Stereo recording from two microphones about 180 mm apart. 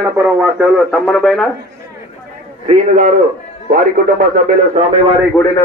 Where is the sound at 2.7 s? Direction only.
45° right (ahead or behind).